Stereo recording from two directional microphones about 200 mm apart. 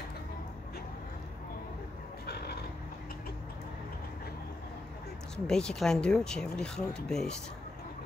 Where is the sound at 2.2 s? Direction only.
55° left (ahead or behind).